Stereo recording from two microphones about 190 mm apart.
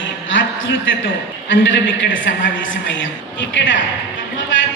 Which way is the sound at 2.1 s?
85° left.